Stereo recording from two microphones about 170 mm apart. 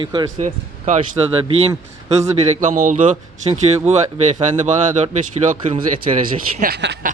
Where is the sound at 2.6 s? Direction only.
50° right (ahead or behind).